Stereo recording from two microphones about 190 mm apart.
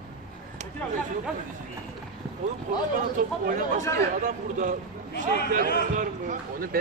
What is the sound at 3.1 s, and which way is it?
A man's voice, 45° right (ahead or behind).